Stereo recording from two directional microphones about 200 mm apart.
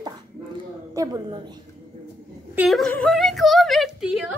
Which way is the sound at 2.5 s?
Centre (ahead or behind).